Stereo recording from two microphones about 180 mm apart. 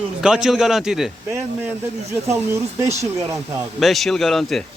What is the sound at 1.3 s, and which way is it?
Speech, 15° right (ahead or behind).